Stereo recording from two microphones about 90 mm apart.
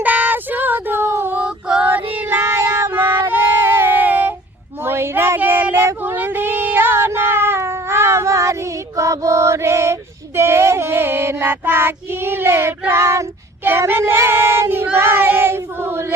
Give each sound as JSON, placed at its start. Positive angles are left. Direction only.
{"t": 0.0, "sound": "female singing", "side_deg": -20}
{"t": 1.9, "sound": "music", "side_deg": -25}
{"t": 4.9, "sound": "child singing", "side_deg": -25}
{"t": 9.0, "sound": "female singing", "side_deg": -35}
{"t": 13.7, "sound": "child singing", "side_deg": -25}